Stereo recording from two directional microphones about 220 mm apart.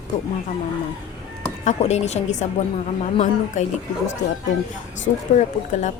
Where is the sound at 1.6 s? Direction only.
30° left (ahead or behind).